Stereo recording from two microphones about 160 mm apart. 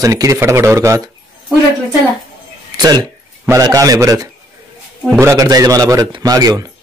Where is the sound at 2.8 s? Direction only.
25° right (ahead or behind).